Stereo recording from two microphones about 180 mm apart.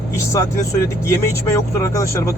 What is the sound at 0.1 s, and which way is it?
Speech, 15° left (ahead or behind).